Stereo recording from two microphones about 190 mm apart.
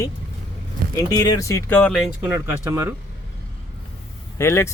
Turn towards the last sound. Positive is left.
turn(degrees=15)  # may be behind; listen again after turning